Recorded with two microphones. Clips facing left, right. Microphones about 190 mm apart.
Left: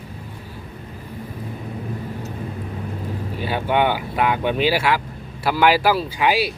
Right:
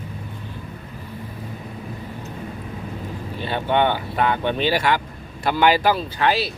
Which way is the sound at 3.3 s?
5° left (ahead or behind).